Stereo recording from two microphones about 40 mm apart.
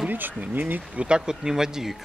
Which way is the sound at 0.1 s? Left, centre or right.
Right.